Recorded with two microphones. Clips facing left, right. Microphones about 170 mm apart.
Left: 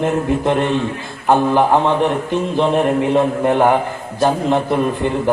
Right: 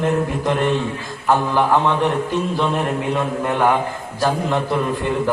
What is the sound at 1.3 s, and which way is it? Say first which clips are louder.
A man's voice: left 4 dB; 20° left (ahead or behind).